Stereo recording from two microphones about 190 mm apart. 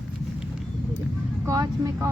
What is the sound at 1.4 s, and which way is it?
Speech, 15° right (ahead or behind).